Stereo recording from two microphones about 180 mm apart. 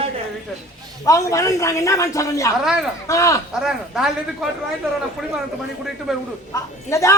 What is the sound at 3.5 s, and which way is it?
Speech, 5° right (ahead or behind).